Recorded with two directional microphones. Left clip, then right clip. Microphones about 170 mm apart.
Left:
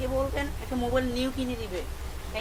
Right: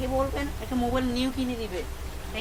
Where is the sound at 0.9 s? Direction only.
25° right (ahead or behind).